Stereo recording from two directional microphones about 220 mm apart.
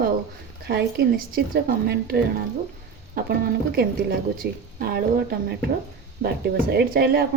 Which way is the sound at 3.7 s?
40° right (ahead or behind).